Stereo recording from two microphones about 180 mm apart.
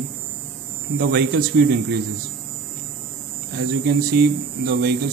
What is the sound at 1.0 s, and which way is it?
Speech, 55° right (ahead or behind).